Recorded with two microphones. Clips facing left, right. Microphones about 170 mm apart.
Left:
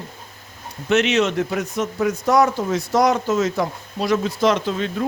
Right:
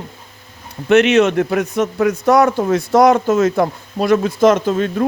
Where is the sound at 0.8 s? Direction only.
60° right (ahead or behind).